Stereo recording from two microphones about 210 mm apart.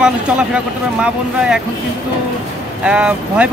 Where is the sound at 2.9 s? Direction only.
5° right (ahead or behind).